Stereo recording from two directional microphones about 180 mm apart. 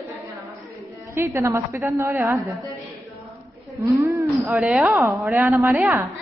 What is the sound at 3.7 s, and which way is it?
Speech, 15° right (ahead or behind).